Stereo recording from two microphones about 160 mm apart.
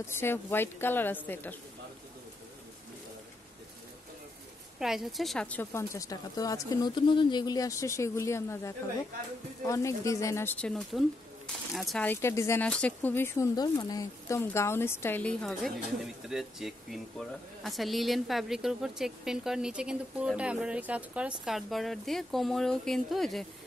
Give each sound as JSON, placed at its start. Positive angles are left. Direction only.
{"t": 0.1, "sound": "a woman's voice", "side_deg": 15}
{"t": 4.7, "sound": "a woman's voice", "side_deg": -5}
{"t": 12.1, "sound": "a woman's voice", "side_deg": 15}
{"t": 15.4, "sound": "speech", "side_deg": 0}